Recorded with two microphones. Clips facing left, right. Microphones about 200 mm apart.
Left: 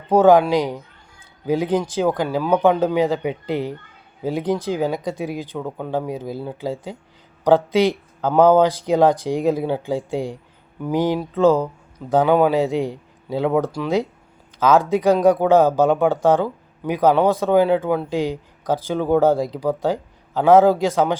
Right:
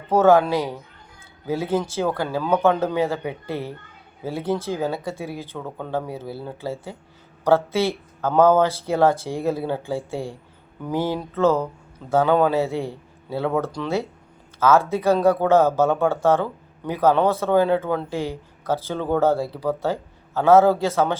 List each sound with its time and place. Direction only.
0.1 s speech: 15° left (ahead or behind)